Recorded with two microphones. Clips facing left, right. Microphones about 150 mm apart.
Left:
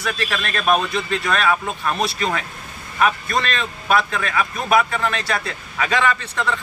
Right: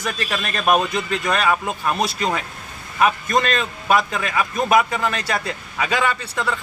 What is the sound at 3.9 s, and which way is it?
A man's voice, 10° right (ahead or behind).